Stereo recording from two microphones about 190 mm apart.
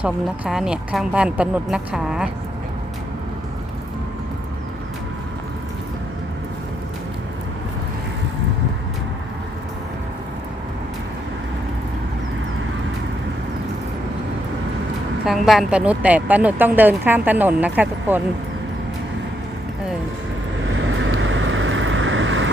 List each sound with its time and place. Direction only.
0.0 s speech: 5° right (ahead or behind)
15.3 s a woman's voice: centre (ahead or behind)
20.8 s vehicle: 90° right